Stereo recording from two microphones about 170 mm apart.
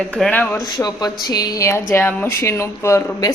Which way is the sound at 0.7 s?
20° left (ahead or behind).